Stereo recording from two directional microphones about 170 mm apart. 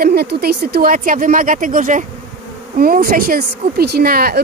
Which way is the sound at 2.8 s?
60° right (ahead or behind).